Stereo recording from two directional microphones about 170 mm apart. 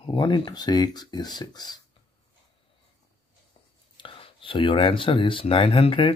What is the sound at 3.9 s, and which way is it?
Speech, 30° left (ahead or behind).